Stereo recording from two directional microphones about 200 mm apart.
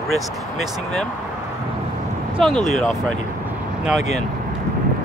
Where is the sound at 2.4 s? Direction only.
5° left (ahead or behind).